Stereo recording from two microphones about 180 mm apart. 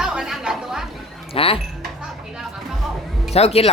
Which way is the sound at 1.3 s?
30° left (ahead or behind).